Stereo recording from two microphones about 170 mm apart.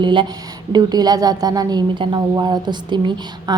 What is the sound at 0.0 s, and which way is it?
A woman's voice, 30° right (ahead or behind).